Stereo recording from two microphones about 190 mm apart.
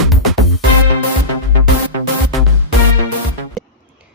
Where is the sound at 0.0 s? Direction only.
Centre (ahead or behind).